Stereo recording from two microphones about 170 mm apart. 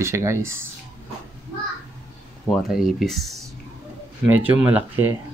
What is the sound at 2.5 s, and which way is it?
Speech, centre (ahead or behind).